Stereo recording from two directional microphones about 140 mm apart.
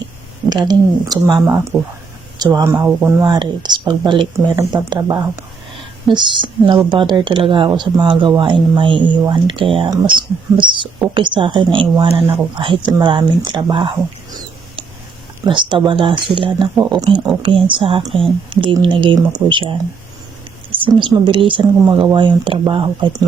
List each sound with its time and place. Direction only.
0.5 s speech: 30° right (ahead or behind)
2.4 s speech: 30° right (ahead or behind)
2.7 s speech: 15° right (ahead or behind)
3.3 s speech: 35° right (ahead or behind)
15.4 s speech: 35° right (ahead or behind)
20.8 s speech: 35° right (ahead or behind)